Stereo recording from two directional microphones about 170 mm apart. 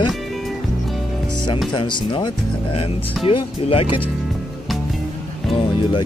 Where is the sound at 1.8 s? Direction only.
30° left (ahead or behind).